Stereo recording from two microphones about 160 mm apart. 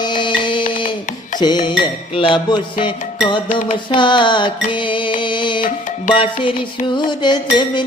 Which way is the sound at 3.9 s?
30° left (ahead or behind).